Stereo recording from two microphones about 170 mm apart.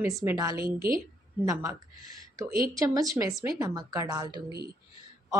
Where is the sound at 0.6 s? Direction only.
60° right (ahead or behind).